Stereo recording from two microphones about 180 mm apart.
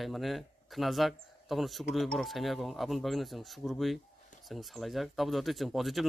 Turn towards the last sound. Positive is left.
turn(degrees=0)  # may be behind; listen again after turning